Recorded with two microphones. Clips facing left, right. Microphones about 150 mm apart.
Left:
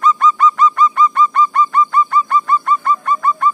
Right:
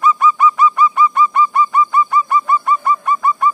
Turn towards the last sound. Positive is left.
turn(degrees=-10)  # may be behind; listen again after turning